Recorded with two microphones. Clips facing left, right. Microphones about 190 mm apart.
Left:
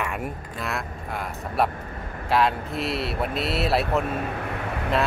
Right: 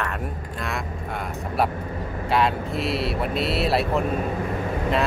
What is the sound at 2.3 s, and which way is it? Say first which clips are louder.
Speech: even; centre (ahead or behind).